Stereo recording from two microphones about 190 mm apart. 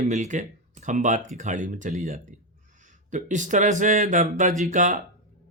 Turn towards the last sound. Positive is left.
turn(degrees=-40)  # may be behind; listen again after turning